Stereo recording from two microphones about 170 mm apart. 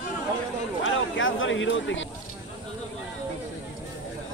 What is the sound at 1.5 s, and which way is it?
Speech, 90° left.